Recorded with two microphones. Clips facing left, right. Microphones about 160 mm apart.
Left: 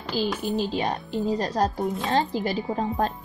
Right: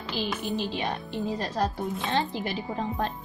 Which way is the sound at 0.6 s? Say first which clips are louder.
Left 4 dB; 40° left (ahead or behind).